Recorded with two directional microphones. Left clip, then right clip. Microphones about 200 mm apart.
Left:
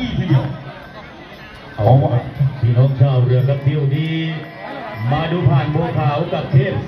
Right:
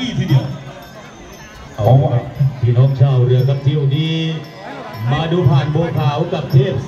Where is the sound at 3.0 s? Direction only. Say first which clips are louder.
Even; 5° right (ahead or behind).